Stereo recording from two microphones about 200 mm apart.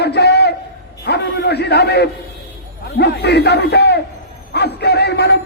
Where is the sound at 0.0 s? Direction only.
55° left (ahead or behind).